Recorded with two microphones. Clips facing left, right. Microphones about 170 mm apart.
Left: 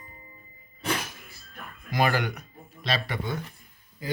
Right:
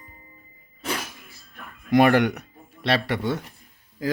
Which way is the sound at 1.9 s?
65° right (ahead or behind).